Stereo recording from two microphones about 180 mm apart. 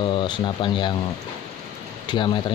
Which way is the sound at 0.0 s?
25° left (ahead or behind).